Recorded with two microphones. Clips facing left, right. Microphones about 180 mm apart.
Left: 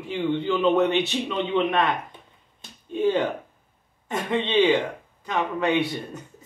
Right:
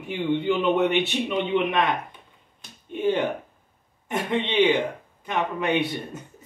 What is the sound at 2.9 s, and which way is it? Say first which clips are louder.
Speech: left 1 dB; 20° right (ahead or behind).